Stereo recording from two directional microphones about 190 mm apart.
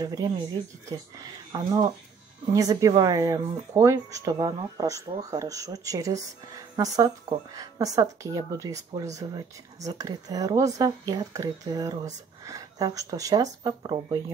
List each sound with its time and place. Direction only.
0.0 s speech: 20° right (ahead or behind)